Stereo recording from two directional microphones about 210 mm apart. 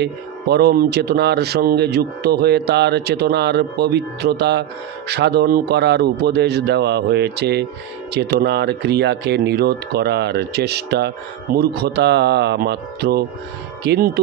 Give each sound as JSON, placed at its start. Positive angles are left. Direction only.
{"t": 0.0, "sound": "speech", "side_deg": -50}